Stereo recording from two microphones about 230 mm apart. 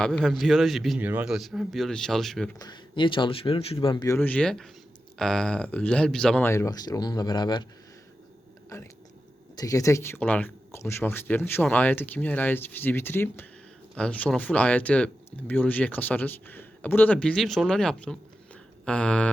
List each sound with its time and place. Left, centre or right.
0.0 s speech: centre
2.6 s speech: centre
9.6 s speech: centre